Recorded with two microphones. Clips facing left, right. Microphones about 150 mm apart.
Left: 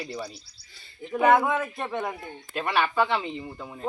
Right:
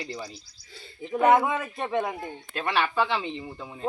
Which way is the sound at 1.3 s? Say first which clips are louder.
Left 1 dB; 5° right (ahead or behind).